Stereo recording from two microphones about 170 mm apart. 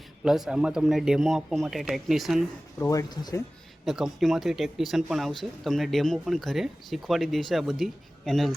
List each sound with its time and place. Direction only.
0.3 s speech: centre (ahead or behind)
2.7 s speech: 20° left (ahead or behind)
3.8 s speech: centre (ahead or behind)